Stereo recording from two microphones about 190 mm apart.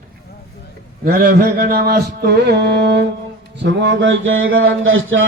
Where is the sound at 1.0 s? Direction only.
45° right (ahead or behind); by 3.1 s 65° right (ahead or behind).